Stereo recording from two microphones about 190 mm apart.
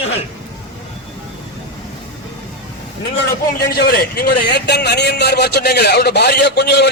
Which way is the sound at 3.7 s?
55° left (ahead or behind).